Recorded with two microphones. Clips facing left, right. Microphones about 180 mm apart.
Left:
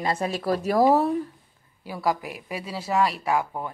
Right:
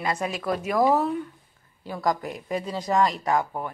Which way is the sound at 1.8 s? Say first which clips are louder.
Even; 10° left (ahead or behind).